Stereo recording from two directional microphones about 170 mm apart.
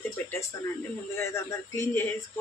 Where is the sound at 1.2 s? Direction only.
15° left (ahead or behind).